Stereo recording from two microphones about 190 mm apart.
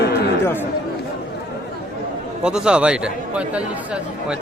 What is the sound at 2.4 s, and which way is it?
A man's voice, 5° right (ahead or behind).